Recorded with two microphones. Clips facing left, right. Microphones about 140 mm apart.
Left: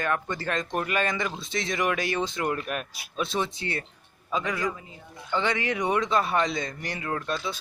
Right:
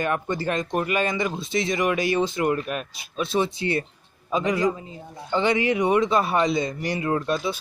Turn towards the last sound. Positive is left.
turn(degrees=-20)  # may be behind; listen again after turning